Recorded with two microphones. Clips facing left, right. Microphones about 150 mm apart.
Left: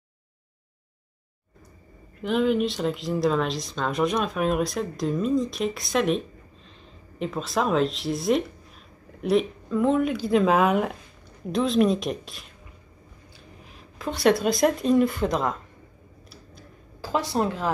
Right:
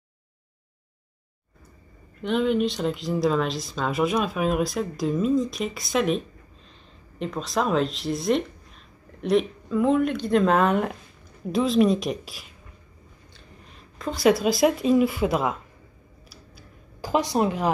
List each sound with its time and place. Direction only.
2.2 s speech: centre (ahead or behind)
13.7 s speech: centre (ahead or behind)
17.0 s a woman's voice: 20° right (ahead or behind)